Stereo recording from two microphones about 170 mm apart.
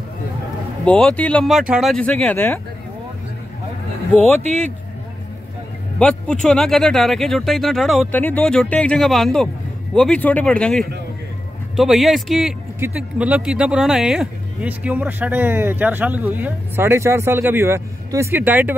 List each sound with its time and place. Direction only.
0.8 s speech: 5° left (ahead or behind)
4.4 s speech: 40° right (ahead or behind)
5.9 s speech: 5° left (ahead or behind); by 18.8 s 10° right (ahead or behind)